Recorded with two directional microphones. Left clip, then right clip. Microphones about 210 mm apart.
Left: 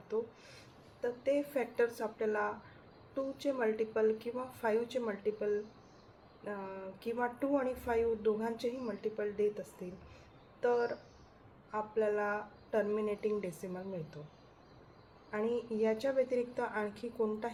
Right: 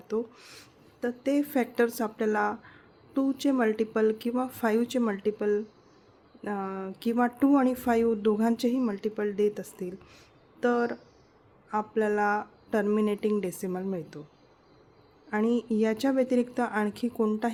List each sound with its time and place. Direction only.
1.0 s speech: 55° right (ahead or behind)
15.3 s speech: 60° right (ahead or behind)